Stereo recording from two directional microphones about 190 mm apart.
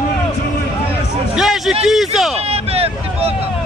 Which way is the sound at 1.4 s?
Centre (ahead or behind).